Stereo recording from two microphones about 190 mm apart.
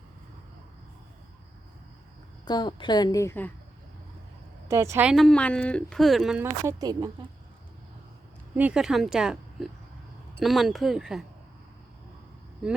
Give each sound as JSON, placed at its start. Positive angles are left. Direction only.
{"t": 2.4, "sound": "a woman's voice", "side_deg": 25}
{"t": 4.7, "sound": "speech", "side_deg": -15}
{"t": 8.5, "sound": "speech", "side_deg": -5}